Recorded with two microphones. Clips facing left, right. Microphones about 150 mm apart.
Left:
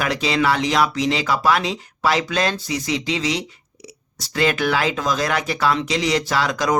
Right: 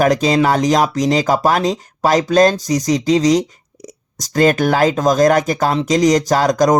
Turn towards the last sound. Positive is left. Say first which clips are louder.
# right 7 dB
turn(degrees=-45)  # may be behind; listen again after turning